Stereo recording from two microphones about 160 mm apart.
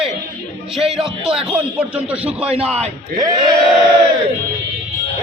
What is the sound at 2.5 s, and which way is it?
Speech, 40° right (ahead or behind).